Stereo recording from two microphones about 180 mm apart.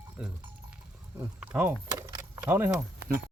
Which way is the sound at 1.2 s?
5° right (ahead or behind).